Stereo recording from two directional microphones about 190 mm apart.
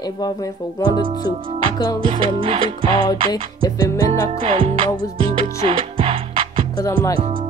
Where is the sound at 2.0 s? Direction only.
30° right (ahead or behind).